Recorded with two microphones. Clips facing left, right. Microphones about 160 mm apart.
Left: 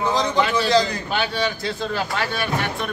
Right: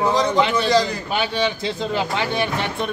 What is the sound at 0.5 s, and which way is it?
Speech, centre (ahead or behind).